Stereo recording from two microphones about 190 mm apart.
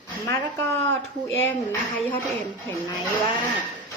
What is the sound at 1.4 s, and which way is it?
Speech, 10° left (ahead or behind).